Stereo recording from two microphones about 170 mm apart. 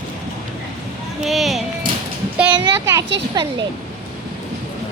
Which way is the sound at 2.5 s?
20° right (ahead or behind).